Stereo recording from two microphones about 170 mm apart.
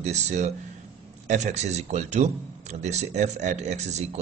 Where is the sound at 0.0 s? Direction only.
40° right (ahead or behind).